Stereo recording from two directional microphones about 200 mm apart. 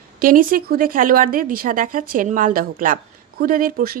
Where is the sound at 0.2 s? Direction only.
45° right (ahead or behind).